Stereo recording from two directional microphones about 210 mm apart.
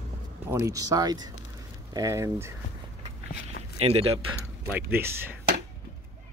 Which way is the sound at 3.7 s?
30° right (ahead or behind).